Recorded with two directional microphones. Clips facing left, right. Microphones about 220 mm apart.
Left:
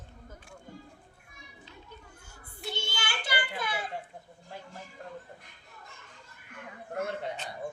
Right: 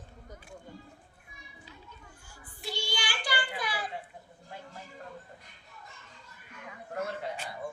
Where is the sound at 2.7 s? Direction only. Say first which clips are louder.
Right 1 dB; 25° left (ahead or behind).